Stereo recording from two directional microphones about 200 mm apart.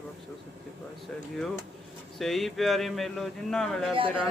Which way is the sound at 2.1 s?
Centre (ahead or behind).